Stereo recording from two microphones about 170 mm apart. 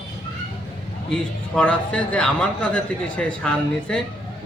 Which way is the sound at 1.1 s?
5° left (ahead or behind).